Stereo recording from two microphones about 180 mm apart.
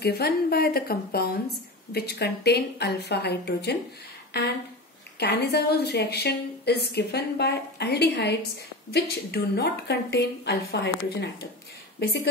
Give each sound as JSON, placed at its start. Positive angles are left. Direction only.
{"t": 0.0, "sound": "a woman's voice", "side_deg": 60}